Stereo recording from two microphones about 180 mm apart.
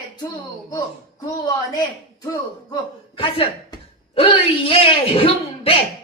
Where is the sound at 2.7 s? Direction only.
30° left (ahead or behind).